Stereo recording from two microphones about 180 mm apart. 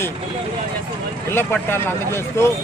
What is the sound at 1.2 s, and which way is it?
Speech, 10° left (ahead or behind).